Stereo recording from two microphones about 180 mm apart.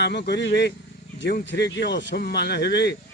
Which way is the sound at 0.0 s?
70° left (ahead or behind).